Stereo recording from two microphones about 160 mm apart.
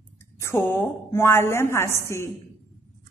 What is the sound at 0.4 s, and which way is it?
A woman's voice, 15° left (ahead or behind).